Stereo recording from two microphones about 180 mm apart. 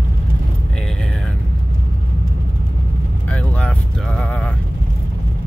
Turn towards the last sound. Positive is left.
turn(degrees=5)  # may be behind; listen again after turning